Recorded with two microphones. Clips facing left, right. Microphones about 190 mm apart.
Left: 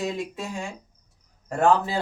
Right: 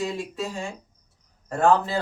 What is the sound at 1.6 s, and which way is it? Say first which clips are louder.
Speech: right 1 dB; 15° left (ahead or behind).